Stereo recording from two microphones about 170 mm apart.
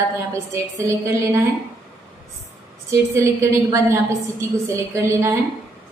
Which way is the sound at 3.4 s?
15° right (ahead or behind).